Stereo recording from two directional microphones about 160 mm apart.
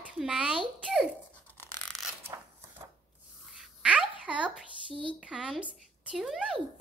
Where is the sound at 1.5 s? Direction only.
15° left (ahead or behind).